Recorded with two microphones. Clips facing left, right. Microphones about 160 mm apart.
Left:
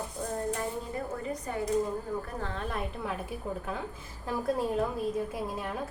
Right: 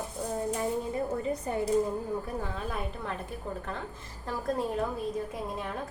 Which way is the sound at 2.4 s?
5° right (ahead or behind).